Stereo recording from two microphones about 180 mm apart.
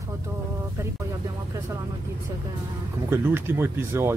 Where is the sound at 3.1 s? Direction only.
10° right (ahead or behind).